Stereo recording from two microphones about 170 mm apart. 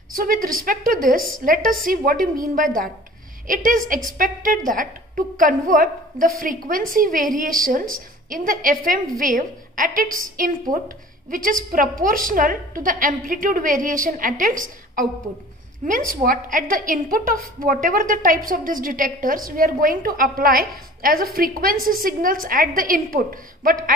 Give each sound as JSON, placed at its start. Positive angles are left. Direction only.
{"t": 0.1, "sound": "a woman's voice", "side_deg": -55}